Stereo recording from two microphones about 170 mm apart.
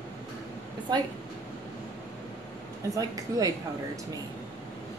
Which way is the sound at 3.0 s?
20° right (ahead or behind).